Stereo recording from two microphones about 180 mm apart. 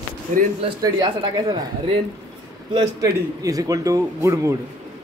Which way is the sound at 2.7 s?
20° right (ahead or behind).